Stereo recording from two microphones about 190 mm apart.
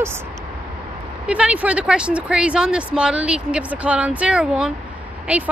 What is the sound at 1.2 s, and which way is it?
Speech, 5° right (ahead or behind).